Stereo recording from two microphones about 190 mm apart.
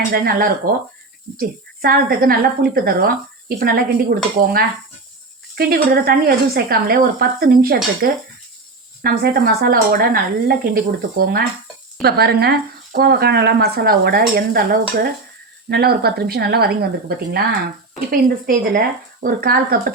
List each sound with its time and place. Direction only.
0.1 s speech: 50° right (ahead or behind)